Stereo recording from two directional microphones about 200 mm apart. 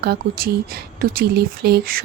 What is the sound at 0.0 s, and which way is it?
Speech, 50° right (ahead or behind).